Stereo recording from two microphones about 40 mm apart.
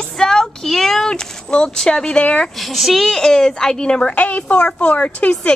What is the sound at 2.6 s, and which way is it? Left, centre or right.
Speech, centre.